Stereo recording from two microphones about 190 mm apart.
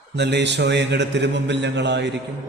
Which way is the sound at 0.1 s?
65° right (ahead or behind).